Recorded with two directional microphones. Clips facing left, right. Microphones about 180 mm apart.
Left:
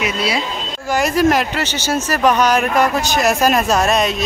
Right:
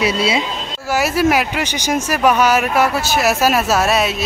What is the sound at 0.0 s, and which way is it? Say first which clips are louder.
Speech: right 3 dB; 25° right (ahead or behind).